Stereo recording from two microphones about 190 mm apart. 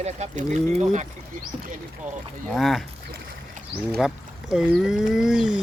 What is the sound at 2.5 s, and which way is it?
Speech, centre (ahead or behind).